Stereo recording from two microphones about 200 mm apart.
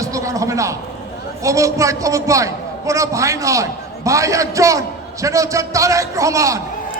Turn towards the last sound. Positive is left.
turn(degrees=-15)  # may be behind; listen again after turning